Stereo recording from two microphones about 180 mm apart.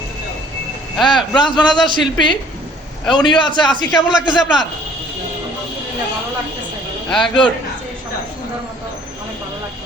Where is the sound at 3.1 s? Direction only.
25° left (ahead or behind).